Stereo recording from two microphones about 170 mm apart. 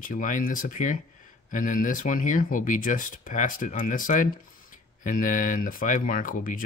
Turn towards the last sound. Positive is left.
turn(degrees=55)  # may be behind; listen again after turning